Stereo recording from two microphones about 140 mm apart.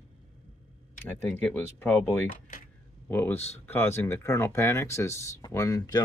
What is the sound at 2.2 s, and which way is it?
Speech, 75° left (ahead or behind).